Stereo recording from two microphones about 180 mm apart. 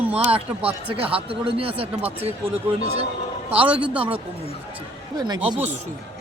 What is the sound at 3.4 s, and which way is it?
Speech, 10° right (ahead or behind).